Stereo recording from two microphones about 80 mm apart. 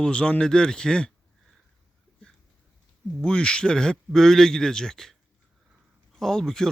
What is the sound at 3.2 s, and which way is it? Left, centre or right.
A man's voice, centre.